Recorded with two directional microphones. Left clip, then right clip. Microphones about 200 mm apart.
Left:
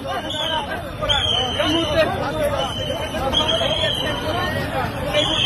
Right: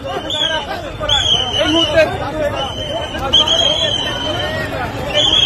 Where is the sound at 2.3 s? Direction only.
55° left (ahead or behind).